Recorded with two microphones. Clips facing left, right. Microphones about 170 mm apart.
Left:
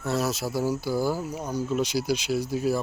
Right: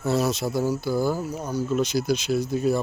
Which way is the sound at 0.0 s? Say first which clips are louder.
Right 4 dB; centre (ahead or behind).